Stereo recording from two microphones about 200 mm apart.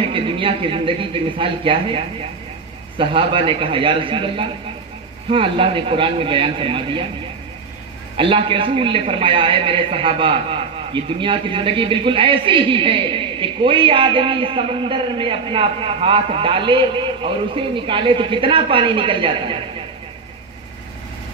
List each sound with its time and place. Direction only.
0.0 s a man's voice: 25° right (ahead or behind)
8.2 s a man's voice: 25° right (ahead or behind)